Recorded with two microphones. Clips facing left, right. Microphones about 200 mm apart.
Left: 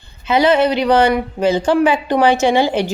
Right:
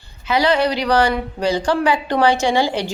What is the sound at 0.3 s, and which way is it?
Speech, 20° left (ahead or behind).